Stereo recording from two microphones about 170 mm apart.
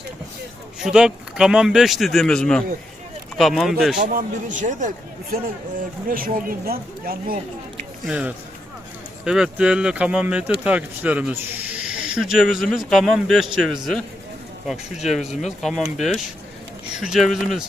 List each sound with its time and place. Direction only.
0.8 s speech: 5° right (ahead or behind)
3.9 s a man's voice: 50° right (ahead or behind)
5.3 s speech: 60° right (ahead or behind)
8.0 s speech: 5° right (ahead or behind)
15.3 s speech: 40° left (ahead or behind)
15.6 s speech: centre (ahead or behind)